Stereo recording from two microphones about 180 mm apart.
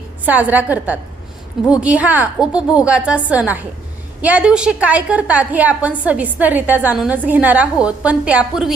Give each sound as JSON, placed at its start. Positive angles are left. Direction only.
{"t": 0.3, "sound": "a woman's voice", "side_deg": -10}